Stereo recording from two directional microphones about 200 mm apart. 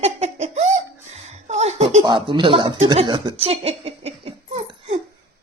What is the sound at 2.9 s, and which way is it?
Speech, 25° right (ahead or behind).